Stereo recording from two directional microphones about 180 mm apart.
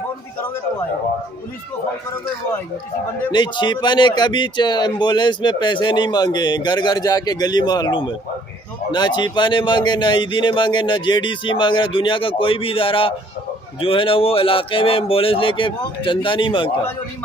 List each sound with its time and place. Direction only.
3.3 s speech: 25° left (ahead or behind)